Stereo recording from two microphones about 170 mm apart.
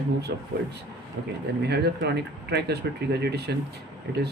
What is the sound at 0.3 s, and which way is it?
Speech, 70° right (ahead or behind).